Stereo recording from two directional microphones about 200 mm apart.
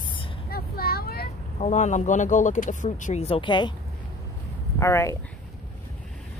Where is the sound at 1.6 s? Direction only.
35° left (ahead or behind).